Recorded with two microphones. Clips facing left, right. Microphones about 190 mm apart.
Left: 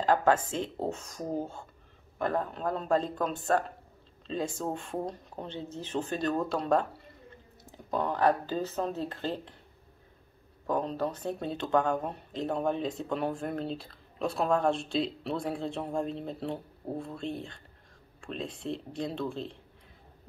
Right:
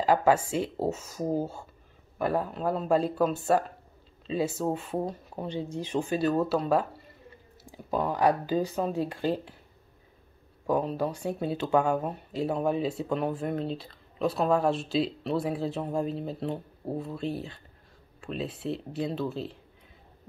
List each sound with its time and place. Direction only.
0.0 s speech: 10° right (ahead or behind)
10.7 s speech: 10° right (ahead or behind)